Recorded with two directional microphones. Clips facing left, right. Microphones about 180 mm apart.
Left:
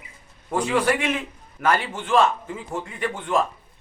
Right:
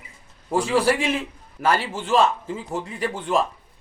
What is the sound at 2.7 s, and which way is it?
Speech, 30° right (ahead or behind).